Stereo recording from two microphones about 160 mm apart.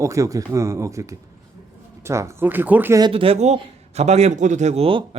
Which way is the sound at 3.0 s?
30° right (ahead or behind).